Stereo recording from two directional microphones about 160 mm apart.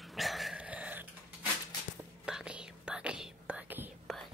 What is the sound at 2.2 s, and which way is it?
Whispering, 5° right (ahead or behind).